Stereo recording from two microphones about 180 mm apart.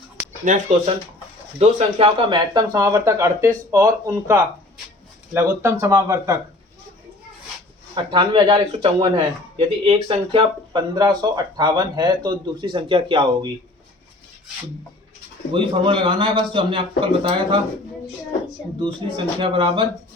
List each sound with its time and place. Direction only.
0.4 s speech: 45° right (ahead or behind)
1.5 s speech: 35° right (ahead or behind); by 6.4 s 15° right (ahead or behind)
7.9 s speech: 25° right (ahead or behind)
15.5 s speech: 30° right (ahead or behind)
18.8 s speech: 30° right (ahead or behind)